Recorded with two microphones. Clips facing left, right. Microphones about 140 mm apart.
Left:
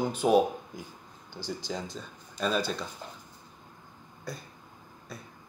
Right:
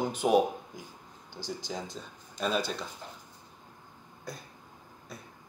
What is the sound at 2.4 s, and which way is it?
Speech, 20° right (ahead or behind).